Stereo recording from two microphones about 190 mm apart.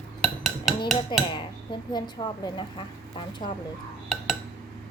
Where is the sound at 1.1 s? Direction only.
25° left (ahead or behind).